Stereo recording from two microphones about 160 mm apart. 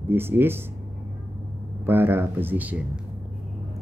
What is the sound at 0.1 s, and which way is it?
Speech, 15° right (ahead or behind).